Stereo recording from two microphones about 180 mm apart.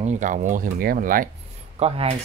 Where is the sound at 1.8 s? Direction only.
35° right (ahead or behind).